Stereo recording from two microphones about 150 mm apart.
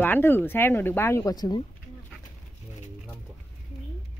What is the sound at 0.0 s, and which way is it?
A woman's voice, 15° left (ahead or behind).